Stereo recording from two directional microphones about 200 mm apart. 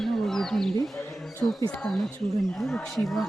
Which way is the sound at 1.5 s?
20° left (ahead or behind).